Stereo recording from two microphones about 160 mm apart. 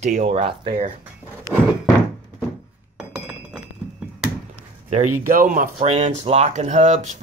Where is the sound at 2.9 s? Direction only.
5° right (ahead or behind).